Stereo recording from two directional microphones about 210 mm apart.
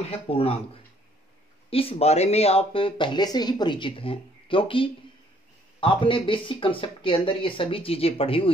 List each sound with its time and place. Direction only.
0.3 s speech: 25° left (ahead or behind)
1.7 s speech: 25° left (ahead or behind)